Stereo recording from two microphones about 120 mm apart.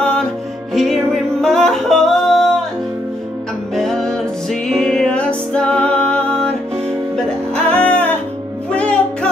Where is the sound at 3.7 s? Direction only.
5° left (ahead or behind).